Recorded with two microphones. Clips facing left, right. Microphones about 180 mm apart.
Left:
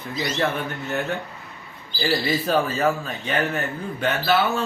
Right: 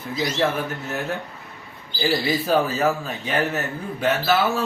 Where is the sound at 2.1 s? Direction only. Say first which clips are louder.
Right 1 dB; 5° right (ahead or behind).